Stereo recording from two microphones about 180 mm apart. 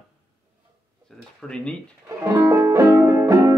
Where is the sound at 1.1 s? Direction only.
5° left (ahead or behind).